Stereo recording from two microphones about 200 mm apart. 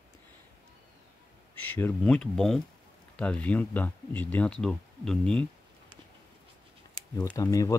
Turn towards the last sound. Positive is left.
turn(degrees=15)  # may be behind; listen again after turning